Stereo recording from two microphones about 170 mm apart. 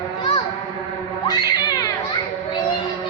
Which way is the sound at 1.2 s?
20° left (ahead or behind).